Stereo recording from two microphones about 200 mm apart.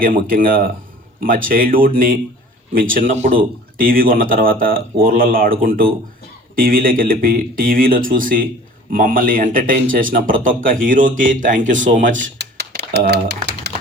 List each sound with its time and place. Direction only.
0.0 s speech: 45° right (ahead or behind)
12.4 s typewriter: 55° right (ahead or behind)